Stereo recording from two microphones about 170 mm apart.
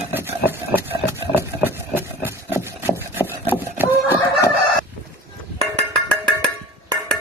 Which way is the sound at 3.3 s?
10° right (ahead or behind).